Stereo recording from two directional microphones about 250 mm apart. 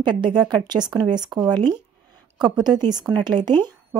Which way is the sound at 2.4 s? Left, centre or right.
Centre.